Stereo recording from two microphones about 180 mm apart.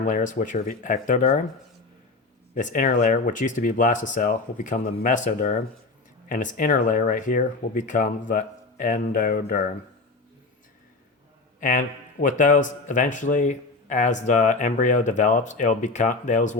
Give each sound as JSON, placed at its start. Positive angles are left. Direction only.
{"t": 0.0, "sound": "speech", "side_deg": 45}
{"t": 2.6, "sound": "speech", "side_deg": 45}
{"t": 11.6, "sound": "speech", "side_deg": 50}